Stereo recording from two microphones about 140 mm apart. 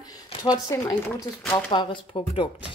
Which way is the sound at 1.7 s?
35° left (ahead or behind).